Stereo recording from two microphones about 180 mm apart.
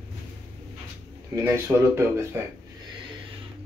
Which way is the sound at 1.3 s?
15° right (ahead or behind).